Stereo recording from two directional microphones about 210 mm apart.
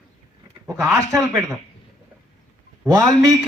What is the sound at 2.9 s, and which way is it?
Speech, 15° right (ahead or behind).